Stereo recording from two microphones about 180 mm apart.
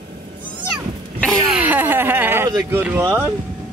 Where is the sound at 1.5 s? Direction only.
10° right (ahead or behind).